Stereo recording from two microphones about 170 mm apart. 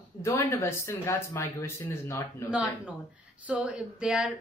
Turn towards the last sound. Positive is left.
turn(degrees=-5)  # may be behind; listen again after turning